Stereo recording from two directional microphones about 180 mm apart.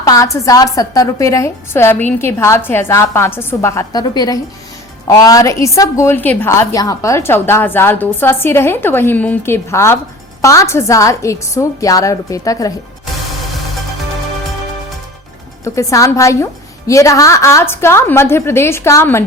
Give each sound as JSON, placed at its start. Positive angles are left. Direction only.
{"t": 0.0, "sound": "a woman's voice", "side_deg": 20}
{"t": 15.6, "sound": "a woman's voice", "side_deg": 15}